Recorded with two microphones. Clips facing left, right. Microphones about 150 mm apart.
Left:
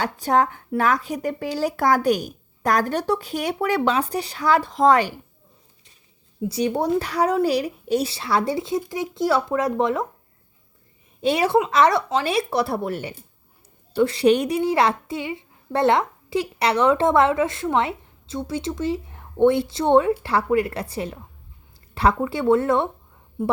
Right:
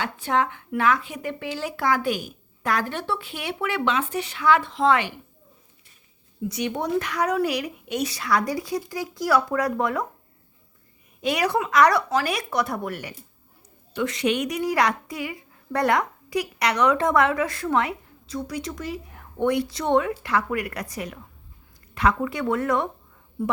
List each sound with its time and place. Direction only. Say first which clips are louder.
0.0 s speech: left 4 dB; 40° left (ahead or behind)
6.4 s a woman's voice: left 5 dB; 35° left (ahead or behind)
11.2 s a woman's voice: left 4 dB; 30° left (ahead or behind)